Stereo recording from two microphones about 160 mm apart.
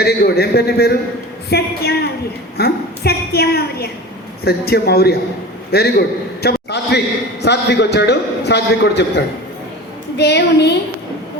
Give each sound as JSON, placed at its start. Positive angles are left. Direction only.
{"t": 0.0, "sound": "a woman's voice", "side_deg": 80}